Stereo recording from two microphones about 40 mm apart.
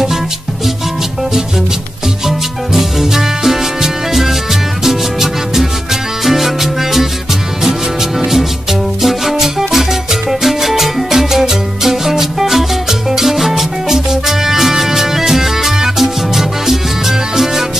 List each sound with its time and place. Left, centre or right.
2.2 s music: centre
8.2 s music: centre